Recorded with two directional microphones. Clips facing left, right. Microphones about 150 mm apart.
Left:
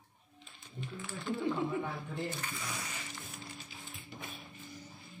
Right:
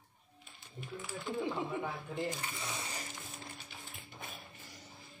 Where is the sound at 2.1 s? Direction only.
20° right (ahead or behind).